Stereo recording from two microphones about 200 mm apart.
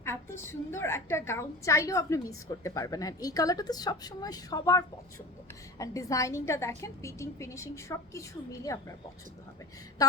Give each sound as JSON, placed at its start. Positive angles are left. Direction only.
{"t": 0.0, "sound": "a woman's voice", "side_deg": 10}
{"t": 5.8, "sound": "a woman's voice", "side_deg": 15}